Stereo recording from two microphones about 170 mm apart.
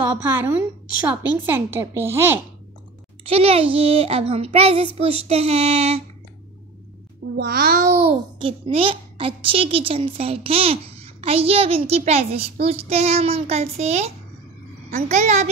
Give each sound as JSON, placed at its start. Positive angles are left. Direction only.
{"t": 0.2, "sound": "a woman's voice", "side_deg": -15}
{"t": 3.3, "sound": "a child's voice", "side_deg": -35}
{"t": 7.3, "sound": "music", "side_deg": -65}
{"t": 7.8, "sound": "a child's voice", "side_deg": -40}